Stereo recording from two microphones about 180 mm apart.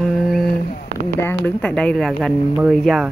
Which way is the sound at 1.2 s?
10° left (ahead or behind).